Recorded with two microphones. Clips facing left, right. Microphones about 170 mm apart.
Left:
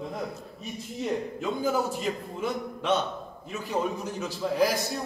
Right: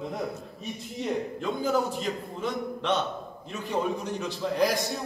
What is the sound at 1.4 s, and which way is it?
A man's voice, 5° left (ahead or behind).